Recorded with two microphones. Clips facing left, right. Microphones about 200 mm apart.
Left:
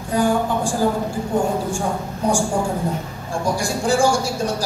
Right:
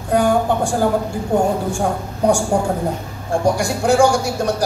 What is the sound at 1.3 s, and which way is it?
Speech, 65° right (ahead or behind).